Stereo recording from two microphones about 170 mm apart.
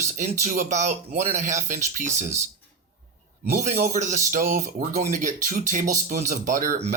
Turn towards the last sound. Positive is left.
turn(degrees=-45)  # may be behind; listen again after turning